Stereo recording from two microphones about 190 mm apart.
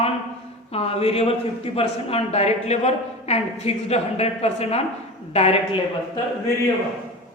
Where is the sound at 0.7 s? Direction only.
30° left (ahead or behind).